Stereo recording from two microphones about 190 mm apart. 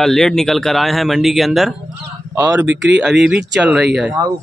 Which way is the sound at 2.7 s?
65° right (ahead or behind).